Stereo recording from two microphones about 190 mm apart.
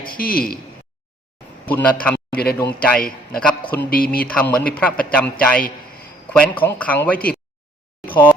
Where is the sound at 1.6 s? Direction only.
10° left (ahead or behind).